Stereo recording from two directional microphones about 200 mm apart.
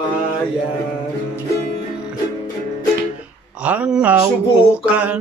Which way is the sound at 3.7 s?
5° right (ahead or behind).